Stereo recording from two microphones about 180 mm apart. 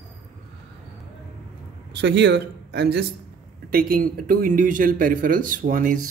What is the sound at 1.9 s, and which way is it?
Speech, 70° right (ahead or behind).